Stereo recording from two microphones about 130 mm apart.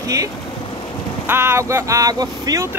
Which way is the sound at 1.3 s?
20° right (ahead or behind).